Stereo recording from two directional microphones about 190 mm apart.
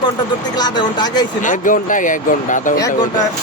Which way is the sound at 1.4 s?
40° left (ahead or behind).